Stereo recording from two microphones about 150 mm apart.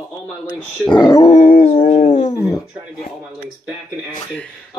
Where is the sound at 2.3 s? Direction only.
25° left (ahead or behind).